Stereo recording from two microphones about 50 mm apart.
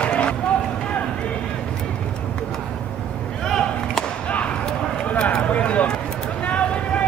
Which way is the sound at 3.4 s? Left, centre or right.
Centre.